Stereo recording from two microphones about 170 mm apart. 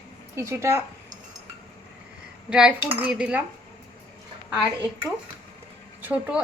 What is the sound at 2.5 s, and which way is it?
Speech, 5° right (ahead or behind).